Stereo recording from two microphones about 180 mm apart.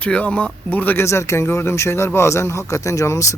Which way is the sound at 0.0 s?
10° left (ahead or behind).